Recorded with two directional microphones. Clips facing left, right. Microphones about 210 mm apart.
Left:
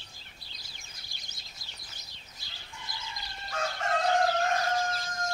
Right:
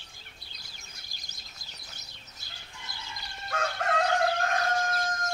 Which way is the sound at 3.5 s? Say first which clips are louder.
Right 2 dB; 55° right (ahead or behind).